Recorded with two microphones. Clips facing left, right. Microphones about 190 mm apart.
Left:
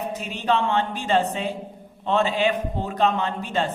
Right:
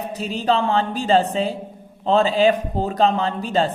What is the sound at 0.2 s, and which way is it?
Speech, 35° right (ahead or behind).